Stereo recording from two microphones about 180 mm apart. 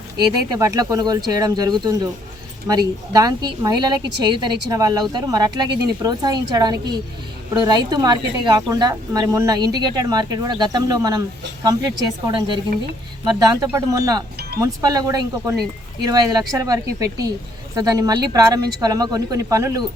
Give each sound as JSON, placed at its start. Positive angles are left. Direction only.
{"t": 0.6, "sound": "a woman's voice", "side_deg": -20}
{"t": 12.2, "sound": "a woman's voice", "side_deg": -25}